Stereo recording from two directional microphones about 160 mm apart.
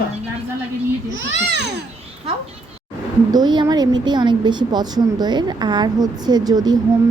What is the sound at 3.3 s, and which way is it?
A woman's voice, 25° right (ahead or behind).